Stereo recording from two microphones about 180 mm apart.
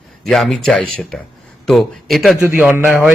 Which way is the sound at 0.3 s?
Centre (ahead or behind).